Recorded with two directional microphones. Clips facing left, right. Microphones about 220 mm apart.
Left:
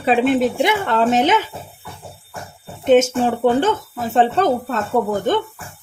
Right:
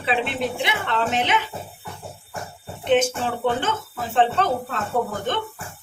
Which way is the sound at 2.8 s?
45° left (ahead or behind).